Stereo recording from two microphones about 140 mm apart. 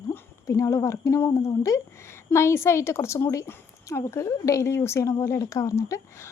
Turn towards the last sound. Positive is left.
turn(degrees=20)  # may be behind; listen again after turning